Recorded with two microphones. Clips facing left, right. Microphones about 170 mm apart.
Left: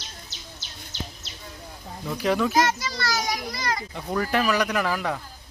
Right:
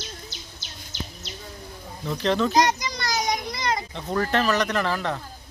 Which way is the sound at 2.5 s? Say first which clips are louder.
Right 2 dB; 20° right (ahead or behind).